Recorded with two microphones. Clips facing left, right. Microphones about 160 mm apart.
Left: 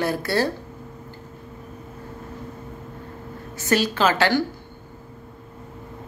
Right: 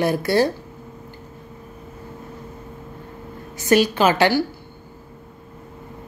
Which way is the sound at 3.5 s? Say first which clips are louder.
Right 5 dB; 15° right (ahead or behind).